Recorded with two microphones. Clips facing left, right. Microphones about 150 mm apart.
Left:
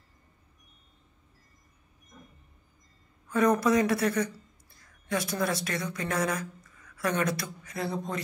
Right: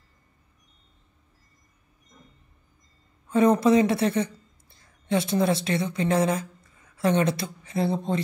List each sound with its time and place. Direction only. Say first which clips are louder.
3.3 s speech: right 5 dB; 25° right (ahead or behind)